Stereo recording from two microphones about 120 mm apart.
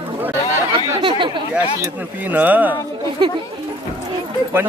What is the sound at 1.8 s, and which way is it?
Speech, 15° right (ahead or behind).